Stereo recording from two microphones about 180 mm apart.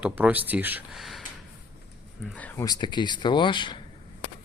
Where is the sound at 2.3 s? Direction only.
10° left (ahead or behind).